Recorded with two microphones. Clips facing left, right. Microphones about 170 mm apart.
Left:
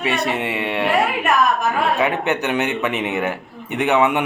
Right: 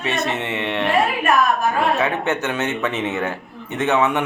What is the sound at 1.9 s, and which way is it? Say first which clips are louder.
A man's voice: left 1 dB; 15° left (ahead or behind).